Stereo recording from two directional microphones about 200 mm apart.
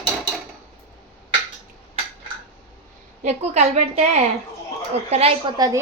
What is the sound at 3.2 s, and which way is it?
A woman's voice, 35° right (ahead or behind).